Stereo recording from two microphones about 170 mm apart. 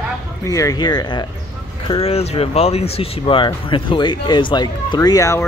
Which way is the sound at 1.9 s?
35° left (ahead or behind).